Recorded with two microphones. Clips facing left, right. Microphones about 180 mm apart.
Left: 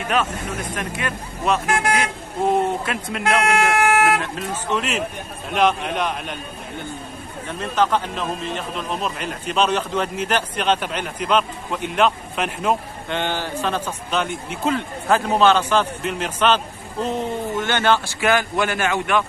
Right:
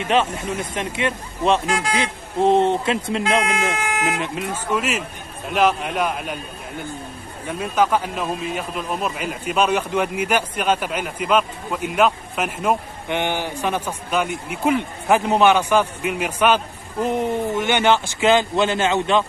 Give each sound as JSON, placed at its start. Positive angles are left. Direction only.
{"t": 0.1, "sound": "speech", "side_deg": -25}
{"t": 3.4, "sound": "speech", "side_deg": 65}
{"t": 4.2, "sound": "a man's voice", "side_deg": -10}
{"t": 7.4, "sound": "a man's voice", "side_deg": -10}